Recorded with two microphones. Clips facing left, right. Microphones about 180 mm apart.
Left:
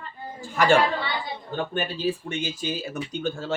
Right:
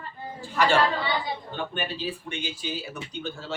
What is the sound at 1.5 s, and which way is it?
Speech, 45° left (ahead or behind).